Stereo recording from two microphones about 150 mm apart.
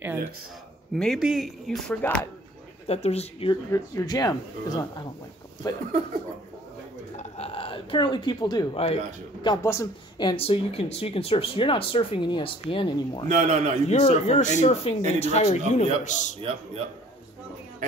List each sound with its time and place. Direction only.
0.9 s speech: centre (ahead or behind)
2.0 s speech: 10° left (ahead or behind)
2.9 s a man's voice: 45° left (ahead or behind)
3.7 s speech: 25° left (ahead or behind)
7.2 s speech: 40° left (ahead or behind)
8.7 s speech: 40° left (ahead or behind)
9.6 s speech: 20° left (ahead or behind); by 13.2 s 35° left (ahead or behind)
13.3 s a man's voice: 50° right (ahead or behind)
13.8 s a man's voice: 45° left (ahead or behind)